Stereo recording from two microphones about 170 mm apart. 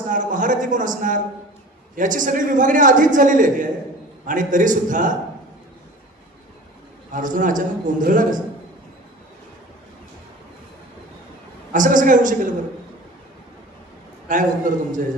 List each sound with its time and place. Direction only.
0.1 s a man's voice: 50° right (ahead or behind)
7.1 s a man's voice: 50° right (ahead or behind)
11.7 s a man's voice: 50° right (ahead or behind)
14.3 s a man's voice: 50° right (ahead or behind)